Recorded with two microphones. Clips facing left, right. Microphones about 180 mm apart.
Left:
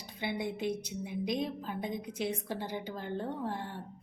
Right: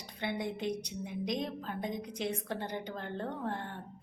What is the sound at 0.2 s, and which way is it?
A woman's voice, 10° left (ahead or behind).